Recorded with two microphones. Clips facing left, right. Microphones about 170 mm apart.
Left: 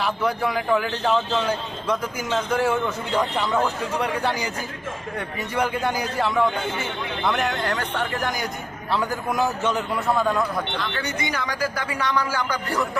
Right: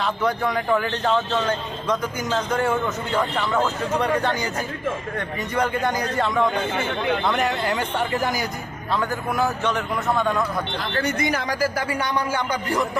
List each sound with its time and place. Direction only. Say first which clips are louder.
0.0 s a man's voice: right 1 dB; 10° left (ahead or behind)
8.9 s a man's voice: even; 10° left (ahead or behind)
10.9 s speech: right 4 dB; 50° right (ahead or behind)
11.9 s speech: even; 25° right (ahead or behind)